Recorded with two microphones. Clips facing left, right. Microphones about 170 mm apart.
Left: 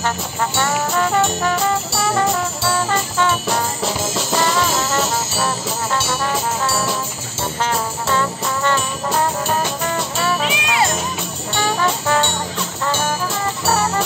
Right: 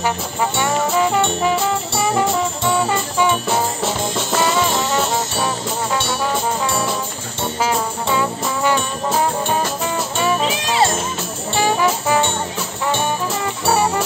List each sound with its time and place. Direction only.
1.4 s brass instrument: 5° right (ahead or behind)
7.6 s brass instrument: 10° right (ahead or behind)
10.4 s music: 35° right (ahead or behind)
11.6 s brass instrument: 15° right (ahead or behind)